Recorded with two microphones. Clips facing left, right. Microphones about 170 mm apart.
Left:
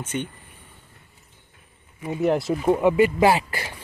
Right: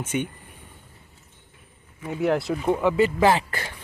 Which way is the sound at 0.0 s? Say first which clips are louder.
Right 2 dB; 10° right (ahead or behind).